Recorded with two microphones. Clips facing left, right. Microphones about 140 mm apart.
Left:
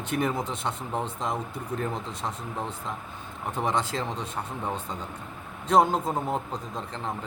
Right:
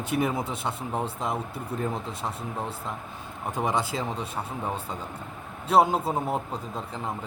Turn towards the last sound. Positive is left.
turn(degrees=-5)  # may be behind; listen again after turning